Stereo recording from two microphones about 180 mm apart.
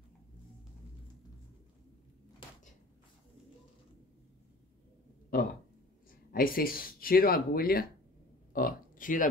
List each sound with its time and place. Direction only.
6.3 s speech: 55° left (ahead or behind)